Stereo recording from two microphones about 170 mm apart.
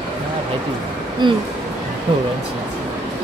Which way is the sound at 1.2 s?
25° right (ahead or behind).